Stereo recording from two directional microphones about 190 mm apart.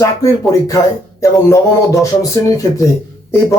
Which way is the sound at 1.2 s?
15° left (ahead or behind).